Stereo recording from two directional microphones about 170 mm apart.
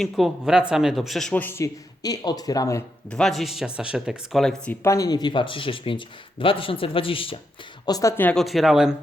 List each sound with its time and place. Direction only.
0.0 s speech: centre (ahead or behind); by 2.8 s 20° left (ahead or behind)
3.1 s speech: 5° left (ahead or behind); by 7.3 s 30° left (ahead or behind)
7.9 s speech: 20° left (ahead or behind); by 9.0 s 5° right (ahead or behind)